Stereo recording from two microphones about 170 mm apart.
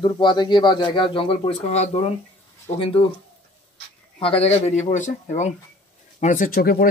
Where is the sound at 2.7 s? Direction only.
15° left (ahead or behind).